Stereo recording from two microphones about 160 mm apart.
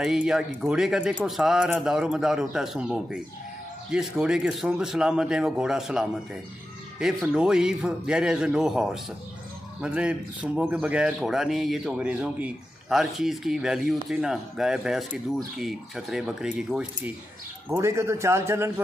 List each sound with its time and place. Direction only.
0.0 s speech: 5° right (ahead or behind)
17.6 s speech: 15° right (ahead or behind)